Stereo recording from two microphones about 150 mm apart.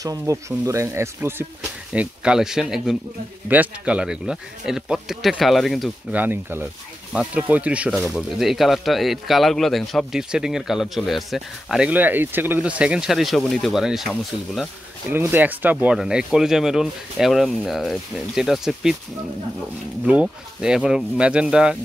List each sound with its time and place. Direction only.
0.0 s speech: 25° right (ahead or behind)
1.9 s speech: 5° right (ahead or behind)
6.1 s speech: 15° right (ahead or behind)
15.1 s speech: 15° right (ahead or behind)
20.1 s speech: 5° right (ahead or behind)